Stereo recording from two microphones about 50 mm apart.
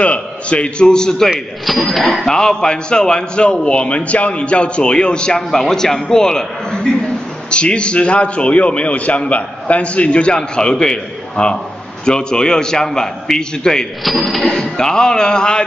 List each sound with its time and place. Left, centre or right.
0.0 s speech: left
1.7 s a man's voice: centre